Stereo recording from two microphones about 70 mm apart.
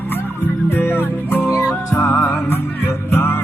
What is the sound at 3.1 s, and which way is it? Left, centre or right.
Music, left.